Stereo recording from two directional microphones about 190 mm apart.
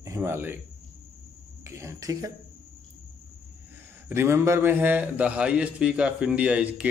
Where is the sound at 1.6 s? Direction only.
15° right (ahead or behind).